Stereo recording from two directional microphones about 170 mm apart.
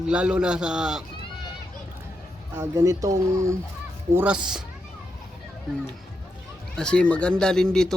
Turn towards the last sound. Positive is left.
turn(degrees=5)  # may be behind; listen again after turning